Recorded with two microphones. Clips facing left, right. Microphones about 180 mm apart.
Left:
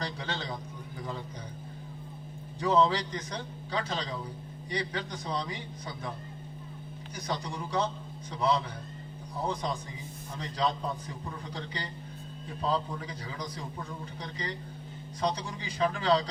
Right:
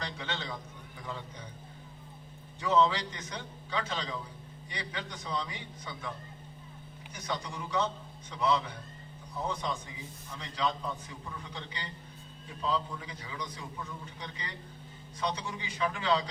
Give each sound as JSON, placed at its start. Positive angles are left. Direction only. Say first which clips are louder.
{"t": 0.0, "sound": "a sound", "louder": "left 2 dB", "side_deg": 35}
{"t": 2.6, "sound": "a man's voice", "louder": "left 2 dB", "side_deg": 35}
{"t": 7.2, "sound": "a man's voice", "louder": "left 2 dB", "side_deg": 35}